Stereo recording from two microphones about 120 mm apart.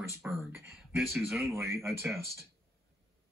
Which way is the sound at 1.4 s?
20° right (ahead or behind).